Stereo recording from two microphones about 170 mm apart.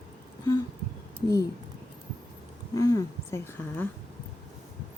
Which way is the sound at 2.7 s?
20° left (ahead or behind).